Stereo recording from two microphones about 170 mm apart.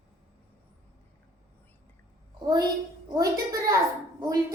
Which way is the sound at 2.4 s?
25° right (ahead or behind).